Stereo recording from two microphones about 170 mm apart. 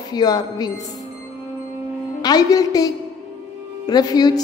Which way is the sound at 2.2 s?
20° left (ahead or behind).